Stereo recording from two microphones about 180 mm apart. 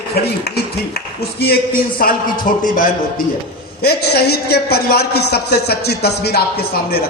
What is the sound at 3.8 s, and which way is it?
A man's voice, 60° left (ahead or behind).